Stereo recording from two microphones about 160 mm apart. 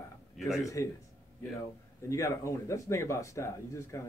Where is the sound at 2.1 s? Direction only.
20° left (ahead or behind).